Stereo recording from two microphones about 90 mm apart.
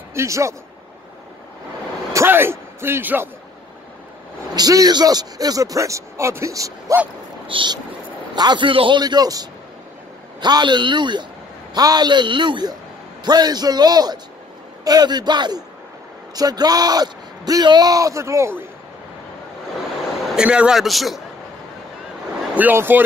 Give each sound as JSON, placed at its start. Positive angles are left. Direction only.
{"t": 0.1, "sound": "speech", "side_deg": -30}
{"t": 2.1, "sound": "speech", "side_deg": -25}
{"t": 4.6, "sound": "speech", "side_deg": -45}
{"t": 7.5, "sound": "a man's voice", "side_deg": -60}
{"t": 9.0, "sound": "a man's voice", "side_deg": -45}
{"t": 11.7, "sound": "a man's voice", "side_deg": -50}
{"t": 20.2, "sound": "a man's voice", "side_deg": -10}
{"t": 22.5, "sound": "speech", "side_deg": -20}